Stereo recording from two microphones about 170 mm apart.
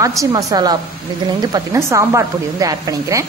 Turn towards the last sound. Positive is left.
turn(degrees=-20)  # may be behind; listen again after turning